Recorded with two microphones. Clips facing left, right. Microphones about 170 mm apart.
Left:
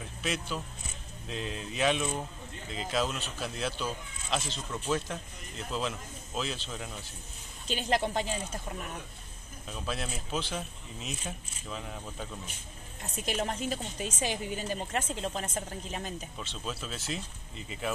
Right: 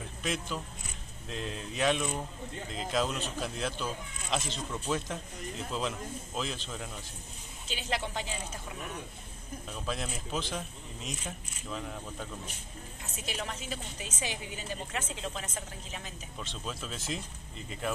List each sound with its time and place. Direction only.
0.2 s speech: 5° left (ahead or behind)
7.6 s a woman's voice: 45° left (ahead or behind)
9.7 s speech: 5° left (ahead or behind)
13.3 s a woman's voice: 45° left (ahead or behind)
16.3 s speech: centre (ahead or behind)